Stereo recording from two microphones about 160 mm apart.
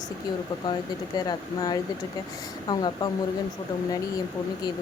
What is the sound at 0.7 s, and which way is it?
Speech, 25° left (ahead or behind).